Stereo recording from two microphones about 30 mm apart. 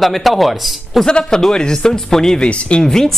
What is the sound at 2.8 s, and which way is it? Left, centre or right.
Speech, centre.